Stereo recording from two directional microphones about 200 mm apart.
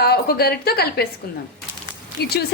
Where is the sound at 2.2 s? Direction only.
55° left (ahead or behind).